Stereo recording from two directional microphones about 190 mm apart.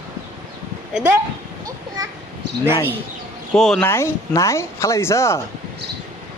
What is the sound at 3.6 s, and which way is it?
Speech, centre (ahead or behind).